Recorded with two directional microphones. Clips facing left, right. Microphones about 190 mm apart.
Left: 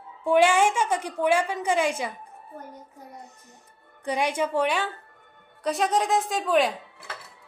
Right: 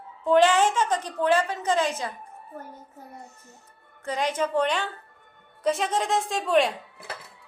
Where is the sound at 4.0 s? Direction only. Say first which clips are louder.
Left 1 dB; 15° left (ahead or behind).